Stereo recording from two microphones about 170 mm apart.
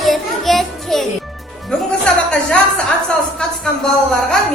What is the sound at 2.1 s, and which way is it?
Music, 5° left (ahead or behind).